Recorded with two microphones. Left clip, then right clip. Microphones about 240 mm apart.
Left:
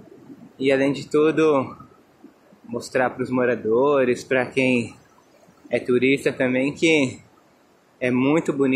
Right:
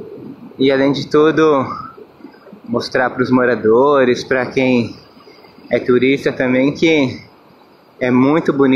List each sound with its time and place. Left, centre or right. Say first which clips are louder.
0.6 s speech: right 6 dB; centre
2.9 s speech: right 6 dB; centre